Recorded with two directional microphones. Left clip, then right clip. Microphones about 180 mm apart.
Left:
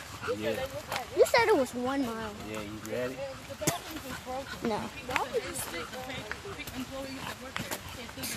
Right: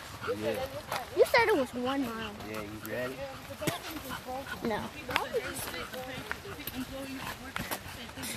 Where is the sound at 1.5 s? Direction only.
5° left (ahead or behind).